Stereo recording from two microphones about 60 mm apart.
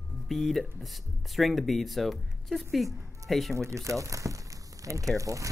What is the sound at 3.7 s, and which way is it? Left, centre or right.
Speech, right.